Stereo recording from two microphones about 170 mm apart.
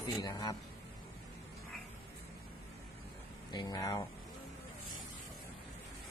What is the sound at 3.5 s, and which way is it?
Speech, 25° left (ahead or behind).